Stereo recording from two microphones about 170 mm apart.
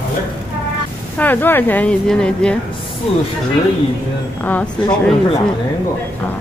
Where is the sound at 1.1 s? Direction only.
10° left (ahead or behind).